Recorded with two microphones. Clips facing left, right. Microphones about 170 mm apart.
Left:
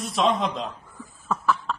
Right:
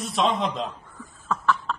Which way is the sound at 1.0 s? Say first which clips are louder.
Even; 10° left (ahead or behind).